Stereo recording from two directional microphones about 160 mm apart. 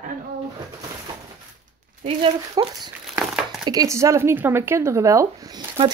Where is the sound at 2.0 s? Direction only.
30° right (ahead or behind).